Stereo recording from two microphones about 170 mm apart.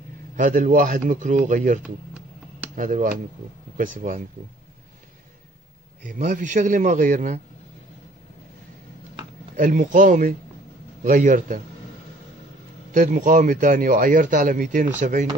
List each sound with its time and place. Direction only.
0.4 s speech: 50° right (ahead or behind)
6.0 s speech: 50° right (ahead or behind)
9.6 s speech: 50° right (ahead or behind)
12.9 s speech: 50° right (ahead or behind)